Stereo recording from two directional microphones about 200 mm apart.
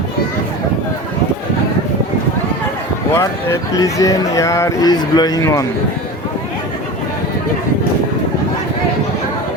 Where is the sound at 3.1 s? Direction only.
15° left (ahead or behind).